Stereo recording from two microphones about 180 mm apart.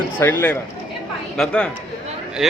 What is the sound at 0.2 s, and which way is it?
A man's voice, 10° left (ahead or behind).